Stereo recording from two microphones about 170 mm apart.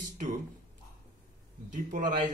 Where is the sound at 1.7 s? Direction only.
50° right (ahead or behind).